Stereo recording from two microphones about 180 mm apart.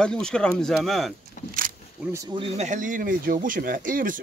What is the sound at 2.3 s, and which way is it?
Speech, 35° right (ahead or behind).